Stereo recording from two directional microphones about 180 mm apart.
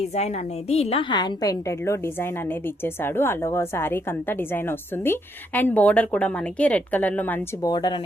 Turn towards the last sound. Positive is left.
turn(degrees=25)  # may be behind; listen again after turning